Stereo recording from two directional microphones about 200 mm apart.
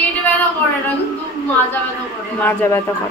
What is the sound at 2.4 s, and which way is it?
Speech, 15° left (ahead or behind).